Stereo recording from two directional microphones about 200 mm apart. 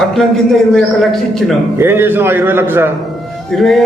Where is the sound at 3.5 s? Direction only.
Centre (ahead or behind).